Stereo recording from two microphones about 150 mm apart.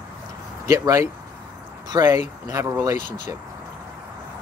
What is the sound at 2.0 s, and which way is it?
Speech, 20° right (ahead or behind).